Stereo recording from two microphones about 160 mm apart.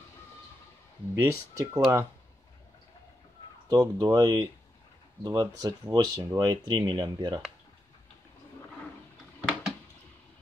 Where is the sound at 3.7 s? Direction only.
20° right (ahead or behind).